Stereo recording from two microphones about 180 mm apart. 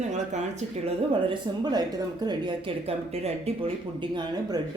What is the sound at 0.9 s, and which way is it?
A man's voice, 25° right (ahead or behind).